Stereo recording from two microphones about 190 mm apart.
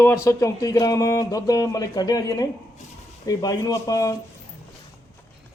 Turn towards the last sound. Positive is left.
turn(degrees=20)  # may be behind; listen again after turning